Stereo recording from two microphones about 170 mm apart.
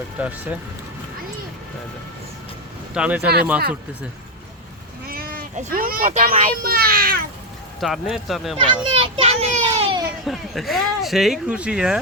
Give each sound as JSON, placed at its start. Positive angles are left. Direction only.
{"t": 0.2, "sound": "speech", "side_deg": -10}
{"t": 2.9, "sound": "speech", "side_deg": -5}
{"t": 5.0, "sound": "speech", "side_deg": -60}
{"t": 6.6, "sound": "a child's voice", "side_deg": -60}
{"t": 7.8, "sound": "speech", "side_deg": 0}
{"t": 8.5, "sound": "a child's voice", "side_deg": -30}
{"t": 10.2, "sound": "speech", "side_deg": 0}